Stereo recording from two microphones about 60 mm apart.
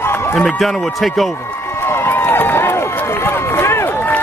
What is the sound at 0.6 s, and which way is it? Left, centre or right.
Speech, centre.